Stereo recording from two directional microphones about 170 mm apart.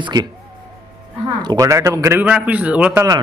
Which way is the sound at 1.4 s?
20° right (ahead or behind).